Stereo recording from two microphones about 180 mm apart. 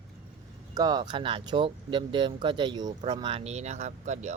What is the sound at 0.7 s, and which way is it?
Speech, 20° right (ahead or behind).